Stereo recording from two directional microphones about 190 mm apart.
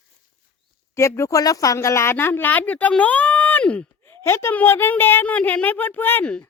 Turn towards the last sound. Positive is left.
turn(degrees=10)  # may be behind; listen again after turning